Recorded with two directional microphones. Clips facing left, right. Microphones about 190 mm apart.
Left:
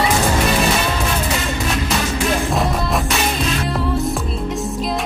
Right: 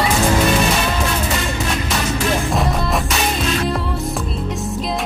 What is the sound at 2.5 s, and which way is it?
Music, centre (ahead or behind).